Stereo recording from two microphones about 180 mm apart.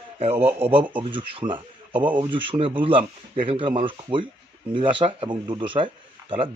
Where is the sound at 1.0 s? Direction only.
25° right (ahead or behind).